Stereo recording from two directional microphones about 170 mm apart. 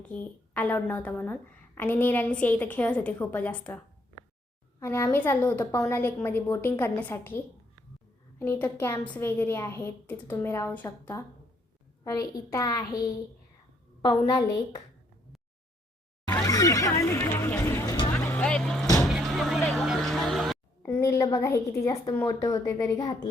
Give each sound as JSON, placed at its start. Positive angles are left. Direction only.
{"t": 0.0, "sound": "a woman's voice", "side_deg": 10}
{"t": 4.8, "sound": "a woman's voice", "side_deg": 15}
{"t": 14.3, "sound": "speech", "side_deg": 20}
{"t": 16.2, "sound": "a sound", "side_deg": 25}
{"t": 18.1, "sound": "vehicle", "side_deg": 10}
{"t": 19.0, "sound": "music", "side_deg": 0}
{"t": 20.8, "sound": "a woman's voice", "side_deg": 15}